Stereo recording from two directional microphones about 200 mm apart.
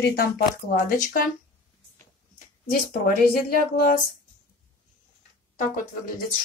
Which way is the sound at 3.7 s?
45° left (ahead or behind).